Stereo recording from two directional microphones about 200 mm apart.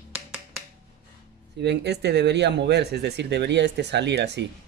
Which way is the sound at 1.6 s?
60° right (ahead or behind).